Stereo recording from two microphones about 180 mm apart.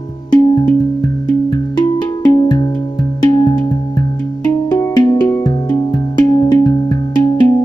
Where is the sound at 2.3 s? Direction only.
25° left (ahead or behind).